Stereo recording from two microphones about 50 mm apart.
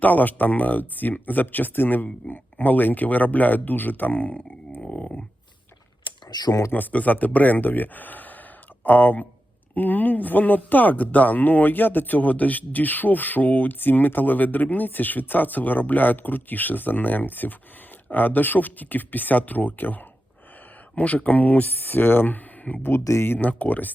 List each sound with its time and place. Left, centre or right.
0.0 s speech: left
4.9 s a sound: left
6.7 s speech: left
22.8 s speech: left
23.4 s speech: left